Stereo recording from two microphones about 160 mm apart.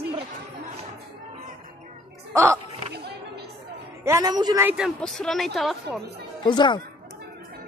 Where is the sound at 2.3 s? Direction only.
15° right (ahead or behind).